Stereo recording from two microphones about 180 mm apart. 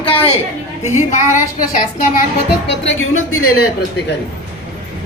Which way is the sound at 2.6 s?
85° left.